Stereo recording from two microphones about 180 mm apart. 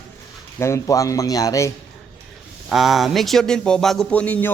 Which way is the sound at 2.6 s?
Centre (ahead or behind).